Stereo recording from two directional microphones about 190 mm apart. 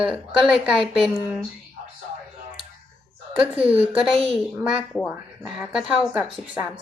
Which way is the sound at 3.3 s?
5° right (ahead or behind).